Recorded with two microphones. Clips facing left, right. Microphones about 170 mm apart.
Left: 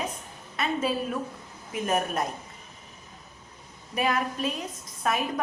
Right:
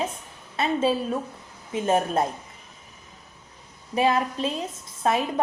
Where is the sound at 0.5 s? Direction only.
30° right (ahead or behind).